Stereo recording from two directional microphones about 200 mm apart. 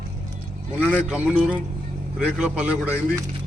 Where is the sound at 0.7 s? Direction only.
5° right (ahead or behind).